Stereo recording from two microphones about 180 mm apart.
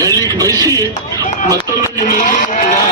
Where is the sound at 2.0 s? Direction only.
45° left (ahead or behind).